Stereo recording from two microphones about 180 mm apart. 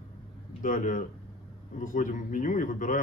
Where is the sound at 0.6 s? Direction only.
45° left (ahead or behind).